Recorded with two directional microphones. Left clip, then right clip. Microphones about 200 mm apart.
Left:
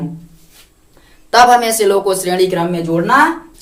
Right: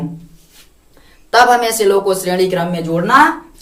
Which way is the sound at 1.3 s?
15° left (ahead or behind).